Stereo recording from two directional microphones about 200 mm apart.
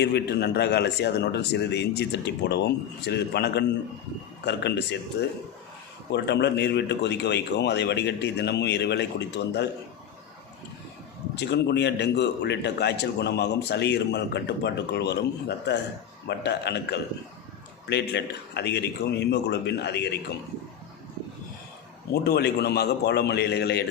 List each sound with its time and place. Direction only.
0.0 s a man's voice: 55° left (ahead or behind)
6.1 s a man's voice: 60° left (ahead or behind)
11.3 s a man's voice: 60° left (ahead or behind)
22.1 s a man's voice: 55° left (ahead or behind)